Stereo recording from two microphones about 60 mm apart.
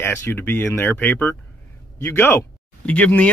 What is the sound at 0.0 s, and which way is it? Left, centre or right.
Speech, left.